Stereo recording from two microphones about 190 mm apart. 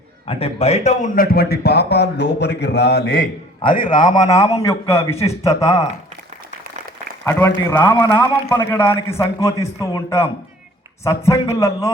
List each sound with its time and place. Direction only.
0.3 s a man's voice: 30° left (ahead or behind); by 3.2 s 55° left (ahead or behind)
3.6 s a man's voice: 25° left (ahead or behind)
7.3 s a man's voice: 10° left (ahead or behind)